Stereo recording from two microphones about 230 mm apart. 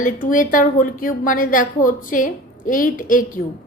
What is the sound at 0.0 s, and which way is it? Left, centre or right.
A woman's voice, left.